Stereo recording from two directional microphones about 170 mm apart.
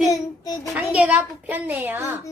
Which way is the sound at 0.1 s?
20° left (ahead or behind).